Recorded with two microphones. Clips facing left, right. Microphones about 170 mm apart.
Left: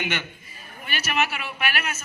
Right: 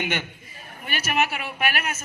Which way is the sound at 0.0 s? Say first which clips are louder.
Right 1 dB; 50° right (ahead or behind).